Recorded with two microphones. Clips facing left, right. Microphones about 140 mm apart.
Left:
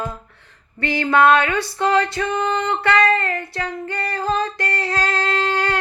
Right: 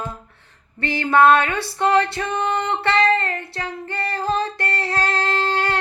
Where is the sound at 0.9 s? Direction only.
25° right (ahead or behind).